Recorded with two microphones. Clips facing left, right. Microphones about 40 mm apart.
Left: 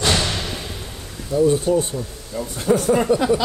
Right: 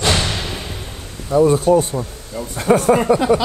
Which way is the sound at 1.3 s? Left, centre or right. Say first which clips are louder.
Right 4 dB; right.